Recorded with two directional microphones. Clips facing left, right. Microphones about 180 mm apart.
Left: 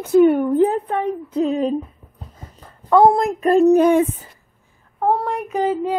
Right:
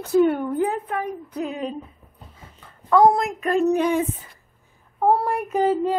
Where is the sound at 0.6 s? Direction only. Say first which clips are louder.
Left 6 dB; 30° left (ahead or behind).